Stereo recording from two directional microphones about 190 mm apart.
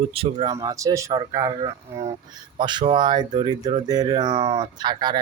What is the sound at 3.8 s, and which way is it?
Speech, 20° right (ahead or behind).